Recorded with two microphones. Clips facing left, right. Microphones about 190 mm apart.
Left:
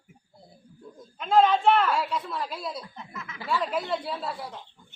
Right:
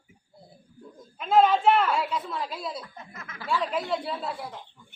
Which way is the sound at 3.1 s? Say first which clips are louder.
Left 3 dB; 45° right (ahead or behind).